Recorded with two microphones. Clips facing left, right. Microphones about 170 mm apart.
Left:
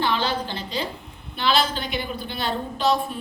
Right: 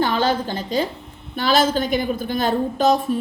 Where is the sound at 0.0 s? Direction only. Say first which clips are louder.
Right 5 dB; 45° right (ahead or behind).